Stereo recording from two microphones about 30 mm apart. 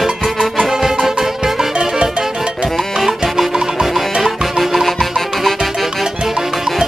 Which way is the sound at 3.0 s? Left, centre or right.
Centre.